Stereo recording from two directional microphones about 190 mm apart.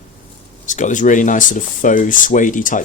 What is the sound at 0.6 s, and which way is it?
Speech, 40° left (ahead or behind).